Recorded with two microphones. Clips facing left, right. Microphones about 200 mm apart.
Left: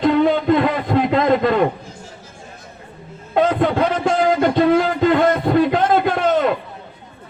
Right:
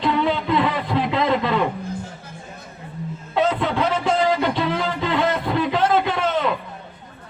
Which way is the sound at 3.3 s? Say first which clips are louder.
Left 4 dB; 50° left (ahead or behind).